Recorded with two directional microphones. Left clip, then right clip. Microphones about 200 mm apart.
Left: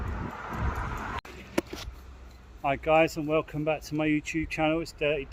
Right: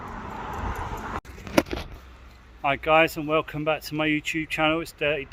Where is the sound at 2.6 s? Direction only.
Centre (ahead or behind).